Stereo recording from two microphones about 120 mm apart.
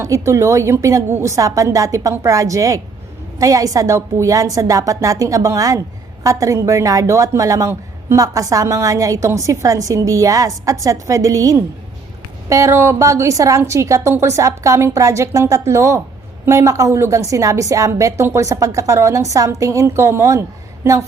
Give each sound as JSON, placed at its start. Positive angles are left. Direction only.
{"t": 0.0, "sound": "a woman's voice", "side_deg": -25}